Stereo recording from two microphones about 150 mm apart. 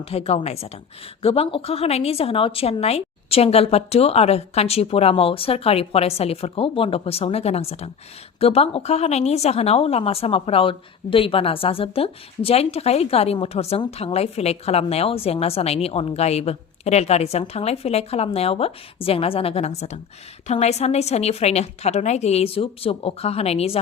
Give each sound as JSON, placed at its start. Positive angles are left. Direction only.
{"t": 0.0, "sound": "a woman's voice", "side_deg": 40}